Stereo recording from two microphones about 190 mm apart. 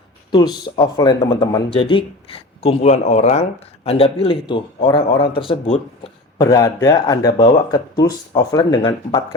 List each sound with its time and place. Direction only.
0.3 s speech: 20° left (ahead or behind)
6.4 s speech: 15° left (ahead or behind)